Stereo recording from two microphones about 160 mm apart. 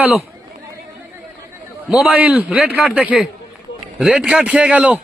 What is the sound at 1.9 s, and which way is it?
Speech, 5° right (ahead or behind).